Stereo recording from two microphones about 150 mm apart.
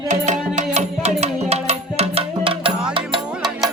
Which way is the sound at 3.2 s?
Centre (ahead or behind).